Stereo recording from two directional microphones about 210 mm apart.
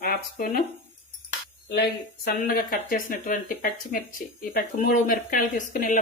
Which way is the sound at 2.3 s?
45° left (ahead or behind).